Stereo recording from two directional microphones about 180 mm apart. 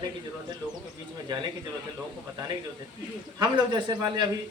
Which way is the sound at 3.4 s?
25° right (ahead or behind).